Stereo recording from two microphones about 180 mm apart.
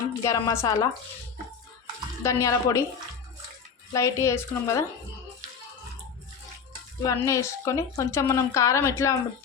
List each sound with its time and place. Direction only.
0.2 s speech: 15° left (ahead or behind)
2.2 s speech: 15° left (ahead or behind)
3.9 s speech: 15° left (ahead or behind)
7.0 s speech: 15° left (ahead or behind)